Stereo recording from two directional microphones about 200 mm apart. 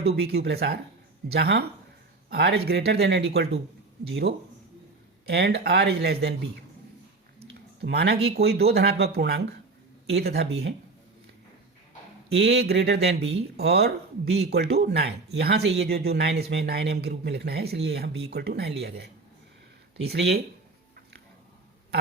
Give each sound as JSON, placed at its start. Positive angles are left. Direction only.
{"t": 0.2, "sound": "speech", "side_deg": -55}
{"t": 7.8, "sound": "speech", "side_deg": -55}
{"t": 12.3, "sound": "speech", "side_deg": -60}